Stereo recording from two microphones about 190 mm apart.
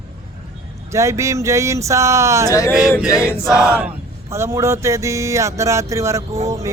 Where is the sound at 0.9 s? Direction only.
15° right (ahead or behind).